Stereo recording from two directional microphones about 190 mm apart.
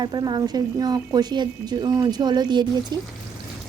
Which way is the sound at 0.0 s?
20° right (ahead or behind).